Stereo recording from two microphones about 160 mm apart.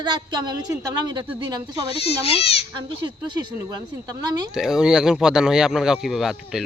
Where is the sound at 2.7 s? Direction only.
30° right (ahead or behind).